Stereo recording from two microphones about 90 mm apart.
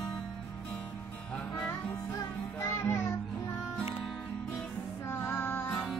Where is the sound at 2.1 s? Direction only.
30° left (ahead or behind).